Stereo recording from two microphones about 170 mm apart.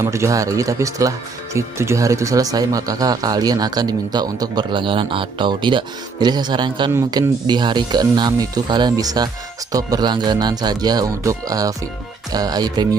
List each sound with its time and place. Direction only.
0.0 s speech: 15° right (ahead or behind)